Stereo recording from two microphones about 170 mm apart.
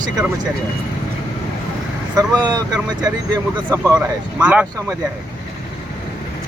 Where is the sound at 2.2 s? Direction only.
25° right (ahead or behind).